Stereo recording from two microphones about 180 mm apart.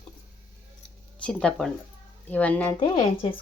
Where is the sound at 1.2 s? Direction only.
5° left (ahead or behind).